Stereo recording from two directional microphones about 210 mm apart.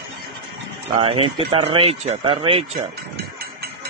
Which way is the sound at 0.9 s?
25° right (ahead or behind).